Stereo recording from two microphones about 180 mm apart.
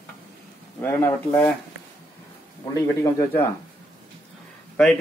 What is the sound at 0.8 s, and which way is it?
Speech, 10° left (ahead or behind).